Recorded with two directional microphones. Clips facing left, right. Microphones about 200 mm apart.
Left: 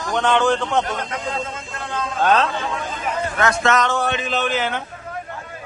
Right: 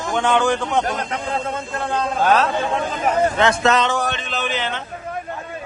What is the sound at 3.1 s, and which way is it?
Speech, 25° right (ahead or behind).